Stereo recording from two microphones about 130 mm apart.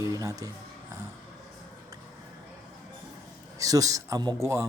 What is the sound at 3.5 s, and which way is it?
Speech, 25° right (ahead or behind).